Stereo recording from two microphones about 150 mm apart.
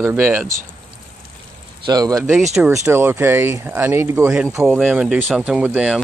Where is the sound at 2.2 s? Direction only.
Centre (ahead or behind).